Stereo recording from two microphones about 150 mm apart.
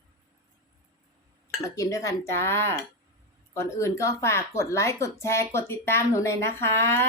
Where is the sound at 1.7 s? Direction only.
20° left (ahead or behind).